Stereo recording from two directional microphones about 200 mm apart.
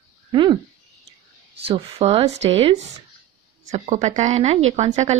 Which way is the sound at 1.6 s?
30° right (ahead or behind).